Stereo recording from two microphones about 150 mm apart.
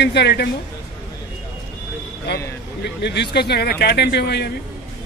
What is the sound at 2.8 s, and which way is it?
Speech, 90° left.